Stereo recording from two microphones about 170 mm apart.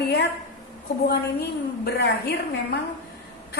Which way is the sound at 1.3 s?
70° left (ahead or behind).